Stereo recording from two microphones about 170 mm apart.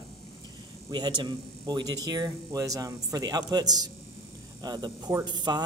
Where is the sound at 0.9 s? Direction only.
25° right (ahead or behind).